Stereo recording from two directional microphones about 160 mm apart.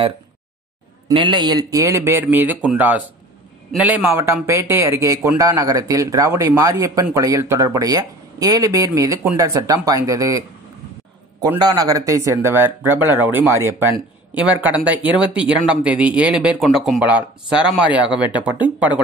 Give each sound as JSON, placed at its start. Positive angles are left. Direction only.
{"t": 1.1, "sound": "speech", "side_deg": -30}
{"t": 11.6, "sound": "speech", "side_deg": -25}